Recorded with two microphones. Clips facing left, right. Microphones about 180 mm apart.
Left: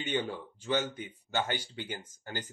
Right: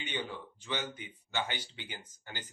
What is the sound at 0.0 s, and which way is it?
A man's voice, 45° left (ahead or behind).